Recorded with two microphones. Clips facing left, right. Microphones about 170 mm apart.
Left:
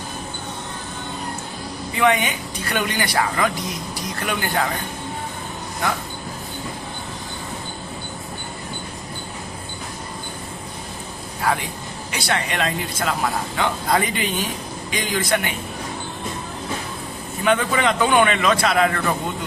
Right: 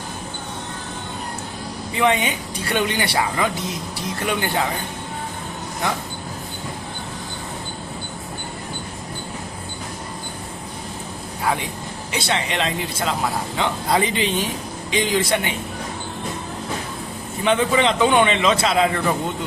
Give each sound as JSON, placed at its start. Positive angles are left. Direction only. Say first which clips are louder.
{"t": 2.0, "sound": "a man's voice", "louder": "even", "side_deg": -25}
{"t": 12.1, "sound": "a man's voice", "louder": "right 1 dB", "side_deg": -20}
{"t": 17.4, "sound": "a man's voice", "louder": "right 1 dB", "side_deg": -25}